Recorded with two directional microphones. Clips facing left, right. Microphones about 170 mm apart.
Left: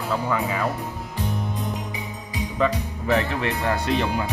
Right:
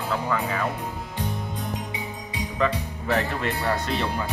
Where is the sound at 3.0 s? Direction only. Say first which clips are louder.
Left 3 dB; centre (ahead or behind).